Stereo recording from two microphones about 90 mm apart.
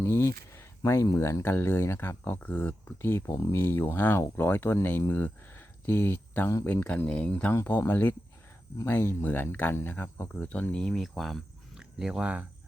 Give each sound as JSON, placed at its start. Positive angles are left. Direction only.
{"t": 0.0, "sound": "speech", "side_deg": 30}
{"t": 7.5, "sound": "speech", "side_deg": 25}